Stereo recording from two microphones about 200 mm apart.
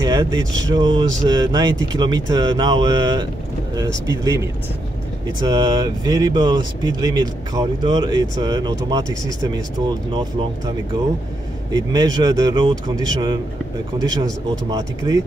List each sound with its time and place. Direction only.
0.0 s speech: 20° right (ahead or behind)
5.4 s speech: 20° right (ahead or behind)
11.7 s speech: 20° right (ahead or behind)
14.7 s speech: 20° right (ahead or behind)